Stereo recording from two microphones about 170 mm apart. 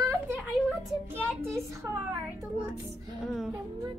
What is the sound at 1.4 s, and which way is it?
Speech, 15° right (ahead or behind).